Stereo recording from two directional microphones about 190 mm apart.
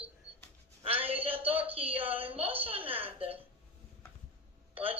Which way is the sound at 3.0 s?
30° right (ahead or behind).